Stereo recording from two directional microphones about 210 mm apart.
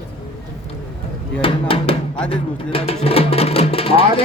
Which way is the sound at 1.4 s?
25° left (ahead or behind).